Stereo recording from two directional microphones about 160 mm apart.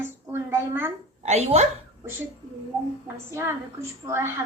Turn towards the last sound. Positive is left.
turn(degrees=-15)  # may be behind; listen again after turning